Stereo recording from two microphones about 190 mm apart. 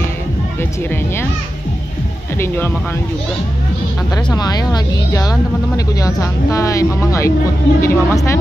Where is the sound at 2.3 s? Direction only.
10° left (ahead or behind).